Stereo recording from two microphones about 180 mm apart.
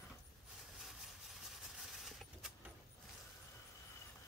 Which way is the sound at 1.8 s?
Centre (ahead or behind).